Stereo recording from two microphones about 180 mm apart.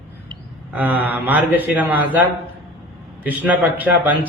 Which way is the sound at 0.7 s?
10° right (ahead or behind).